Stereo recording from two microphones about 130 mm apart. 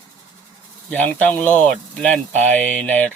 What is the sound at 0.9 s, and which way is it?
Speech, 10° left (ahead or behind).